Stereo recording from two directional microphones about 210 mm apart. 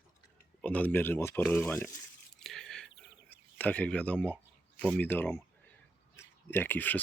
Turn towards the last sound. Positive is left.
turn(degrees=10)  # may be behind; listen again after turning